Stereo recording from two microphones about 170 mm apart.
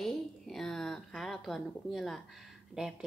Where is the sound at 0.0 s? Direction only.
Centre (ahead or behind).